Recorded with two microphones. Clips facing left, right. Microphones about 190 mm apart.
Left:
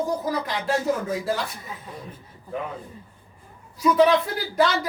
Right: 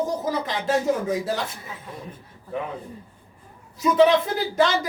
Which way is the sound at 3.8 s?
20° right (ahead or behind).